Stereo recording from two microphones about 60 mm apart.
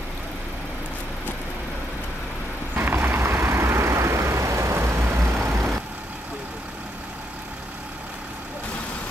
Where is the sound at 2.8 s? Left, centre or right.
Right.